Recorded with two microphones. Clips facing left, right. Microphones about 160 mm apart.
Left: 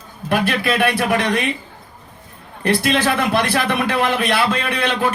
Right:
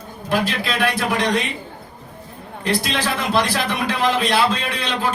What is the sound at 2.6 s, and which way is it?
A man's voice, 60° left (ahead or behind).